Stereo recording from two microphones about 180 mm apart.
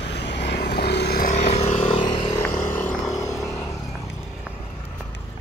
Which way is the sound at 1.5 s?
35° left (ahead or behind).